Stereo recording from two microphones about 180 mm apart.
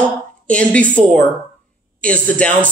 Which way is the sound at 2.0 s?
5° left (ahead or behind).